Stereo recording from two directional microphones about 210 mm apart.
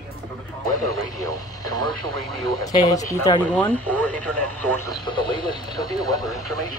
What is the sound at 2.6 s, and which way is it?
Speech, 15° left (ahead or behind).